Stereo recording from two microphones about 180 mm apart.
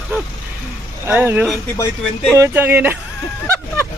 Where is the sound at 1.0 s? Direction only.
10° right (ahead or behind).